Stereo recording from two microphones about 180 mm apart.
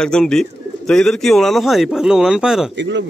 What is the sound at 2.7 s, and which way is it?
Speech, 80° right.